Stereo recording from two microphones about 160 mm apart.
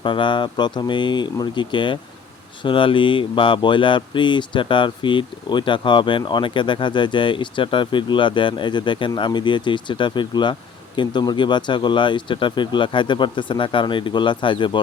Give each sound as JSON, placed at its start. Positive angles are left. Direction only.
{"t": 0.0, "sound": "speech", "side_deg": 30}